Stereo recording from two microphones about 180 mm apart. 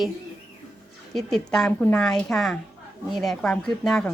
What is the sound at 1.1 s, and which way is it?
Speech, 5° left (ahead or behind).